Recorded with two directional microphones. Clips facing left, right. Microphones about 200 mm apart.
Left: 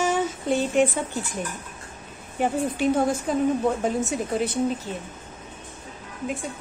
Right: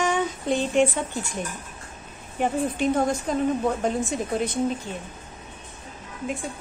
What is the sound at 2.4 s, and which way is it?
A woman's voice, 5° left (ahead or behind).